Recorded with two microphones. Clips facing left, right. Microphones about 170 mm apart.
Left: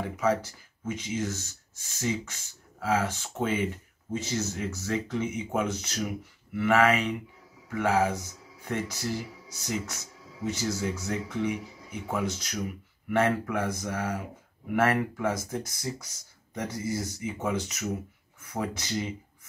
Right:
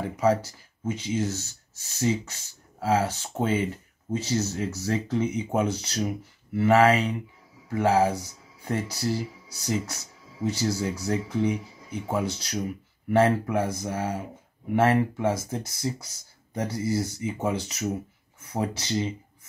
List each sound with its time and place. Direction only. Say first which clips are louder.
0.8 s speech: right 4 dB; 30° right (ahead or behind)